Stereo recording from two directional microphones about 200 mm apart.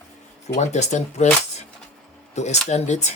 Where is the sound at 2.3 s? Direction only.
35° left (ahead or behind).